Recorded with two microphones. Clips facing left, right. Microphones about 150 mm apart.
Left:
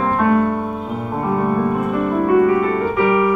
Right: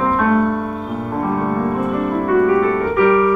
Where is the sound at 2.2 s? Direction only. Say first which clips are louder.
Even; 15° left (ahead or behind).